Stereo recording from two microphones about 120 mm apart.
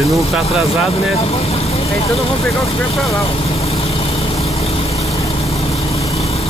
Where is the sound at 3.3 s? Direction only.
55° left (ahead or behind).